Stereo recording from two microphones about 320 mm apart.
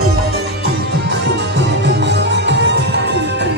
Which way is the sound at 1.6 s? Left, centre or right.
Right.